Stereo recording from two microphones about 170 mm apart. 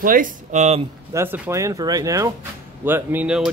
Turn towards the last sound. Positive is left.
turn(degrees=-5)  # may be behind; listen again after turning